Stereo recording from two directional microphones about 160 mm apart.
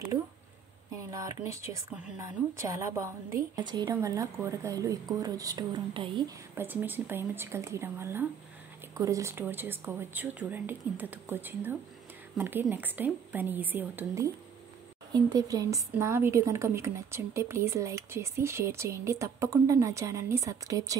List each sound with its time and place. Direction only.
1.1 s a woman's voice: 20° right (ahead or behind)
6.5 s a woman's voice: 15° right (ahead or behind)